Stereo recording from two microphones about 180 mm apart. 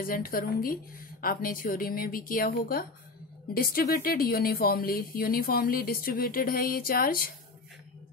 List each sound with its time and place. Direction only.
0.0 s a woman's voice: 50° left (ahead or behind)